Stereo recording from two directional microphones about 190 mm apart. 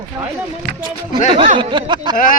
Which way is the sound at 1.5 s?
25° right (ahead or behind).